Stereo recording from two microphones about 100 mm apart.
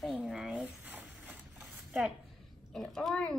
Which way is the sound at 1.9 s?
10° right (ahead or behind).